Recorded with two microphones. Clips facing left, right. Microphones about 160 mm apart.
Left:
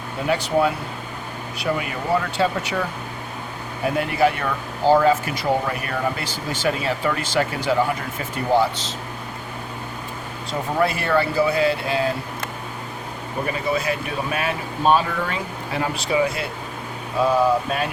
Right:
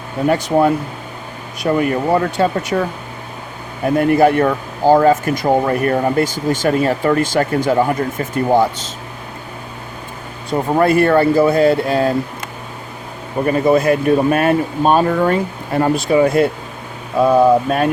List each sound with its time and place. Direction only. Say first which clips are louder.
0.3 s speech: right 6 dB; 50° right (ahead or behind)
3.8 s speech: right 8 dB; 45° right (ahead or behind)
10.8 s speech: right 8 dB; 50° right (ahead or behind)
13.5 s speech: right 11 dB; 50° right (ahead or behind)